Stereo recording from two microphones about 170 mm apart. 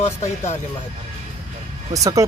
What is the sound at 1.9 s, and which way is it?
Speech, 20° right (ahead or behind).